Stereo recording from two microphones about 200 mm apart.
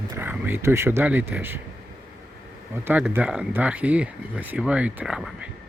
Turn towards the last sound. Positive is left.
turn(degrees=-5)  # may be behind; listen again after turning